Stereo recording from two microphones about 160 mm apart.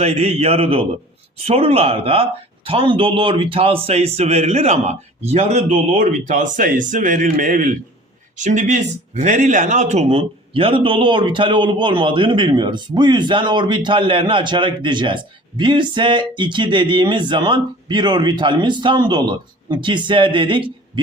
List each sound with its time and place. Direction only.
0.0 s speech: 40° right (ahead or behind)